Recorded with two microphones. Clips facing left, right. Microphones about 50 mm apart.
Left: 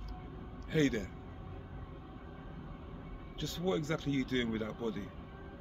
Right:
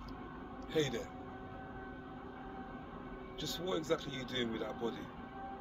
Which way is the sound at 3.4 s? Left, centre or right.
Left.